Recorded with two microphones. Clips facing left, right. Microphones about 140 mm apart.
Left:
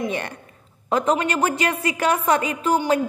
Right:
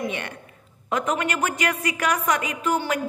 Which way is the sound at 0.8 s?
30° left (ahead or behind).